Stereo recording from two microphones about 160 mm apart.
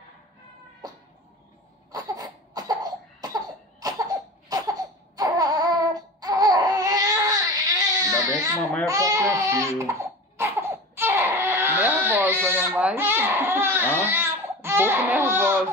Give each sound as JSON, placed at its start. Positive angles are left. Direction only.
{"t": 1.9, "sound": "cough", "side_deg": -25}
{"t": 11.0, "sound": "a sound", "side_deg": -15}
{"t": 14.0, "sound": "baby cry", "side_deg": -15}